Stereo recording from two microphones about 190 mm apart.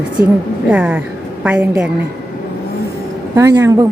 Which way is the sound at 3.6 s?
15° right (ahead or behind).